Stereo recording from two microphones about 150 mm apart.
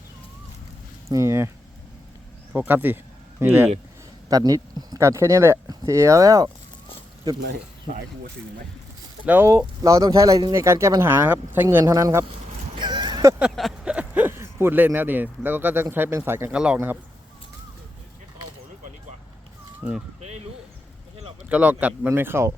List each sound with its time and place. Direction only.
1.0 s speech: 20° right (ahead or behind)
2.5 s speech: 10° right (ahead or behind)
4.3 s speech: 25° right (ahead or behind)
9.2 s speech: 15° right (ahead or behind)
12.7 s a sound: 30° right (ahead or behind)
13.4 s speech: 5° right (ahead or behind)
19.8 s speech: 10° right (ahead or behind)
21.5 s speech: 10° right (ahead or behind)